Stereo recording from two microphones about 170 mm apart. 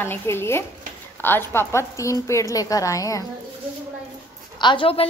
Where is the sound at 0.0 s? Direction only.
15° left (ahead or behind).